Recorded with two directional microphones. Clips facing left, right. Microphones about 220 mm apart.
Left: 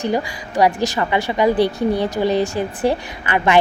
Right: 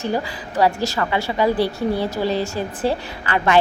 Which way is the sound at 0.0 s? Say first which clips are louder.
Left 3 dB; 15° left (ahead or behind).